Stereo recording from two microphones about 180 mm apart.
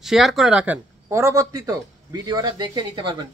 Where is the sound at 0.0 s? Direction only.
Centre (ahead or behind).